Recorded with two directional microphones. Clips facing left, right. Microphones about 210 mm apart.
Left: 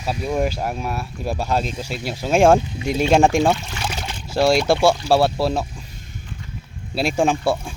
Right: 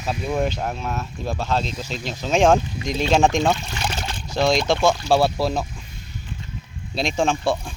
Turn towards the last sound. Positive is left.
turn(degrees=10)  # may be behind; listen again after turning